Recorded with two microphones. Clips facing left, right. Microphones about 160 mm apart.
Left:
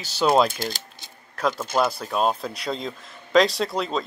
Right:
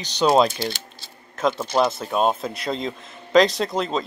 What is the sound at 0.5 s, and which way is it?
Speech, 45° left (ahead or behind).